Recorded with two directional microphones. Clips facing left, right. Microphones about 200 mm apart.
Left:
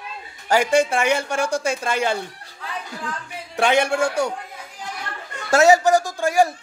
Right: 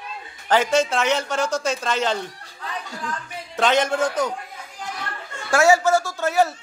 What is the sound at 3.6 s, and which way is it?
Speech, 10° left (ahead or behind).